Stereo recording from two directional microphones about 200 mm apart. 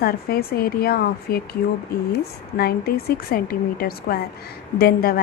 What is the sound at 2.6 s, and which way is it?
A woman's voice, 50° left (ahead or behind).